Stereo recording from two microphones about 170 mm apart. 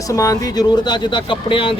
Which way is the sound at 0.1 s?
20° left (ahead or behind).